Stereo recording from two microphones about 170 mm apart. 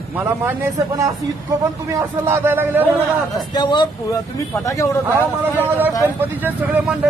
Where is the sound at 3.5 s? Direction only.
25° left (ahead or behind).